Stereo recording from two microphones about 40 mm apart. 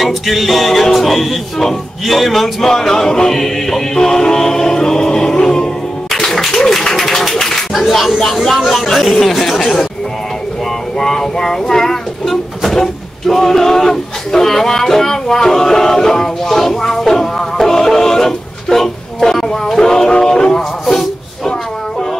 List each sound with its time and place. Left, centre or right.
0.0 s music: centre
6.1 s clapping: centre
7.8 s music: centre
8.8 s chatter: centre
11.0 s speech: centre